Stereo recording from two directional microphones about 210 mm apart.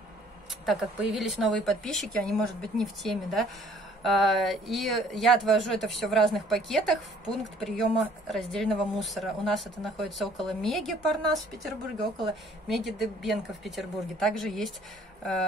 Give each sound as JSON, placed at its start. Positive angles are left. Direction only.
{"t": 0.7, "sound": "speech", "side_deg": 0}